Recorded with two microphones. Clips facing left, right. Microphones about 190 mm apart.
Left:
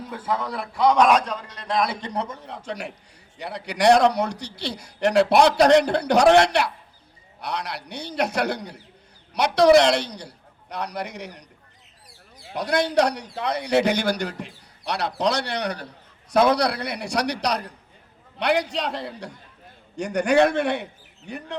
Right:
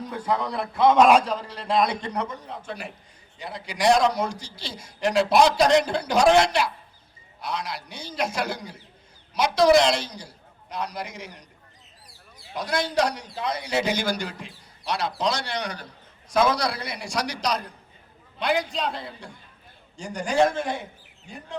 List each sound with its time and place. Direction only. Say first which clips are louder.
0.0 s a man's voice: right 1 dB; 5° left (ahead or behind)
1.3 s a man's voice: right 3 dB; 30° right (ahead or behind)
2.5 s a man's voice: left 3 dB; 75° left (ahead or behind)
12.5 s a man's voice: left 4 dB; 65° left (ahead or behind)